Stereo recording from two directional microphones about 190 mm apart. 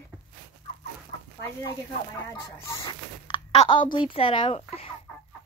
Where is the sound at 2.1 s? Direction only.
15° left (ahead or behind).